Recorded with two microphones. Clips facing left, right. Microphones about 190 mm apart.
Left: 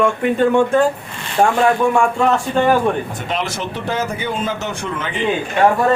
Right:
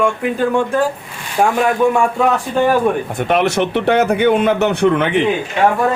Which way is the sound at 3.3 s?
60° right (ahead or behind).